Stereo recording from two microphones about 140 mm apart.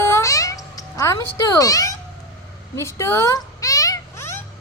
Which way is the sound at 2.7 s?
20° left (ahead or behind).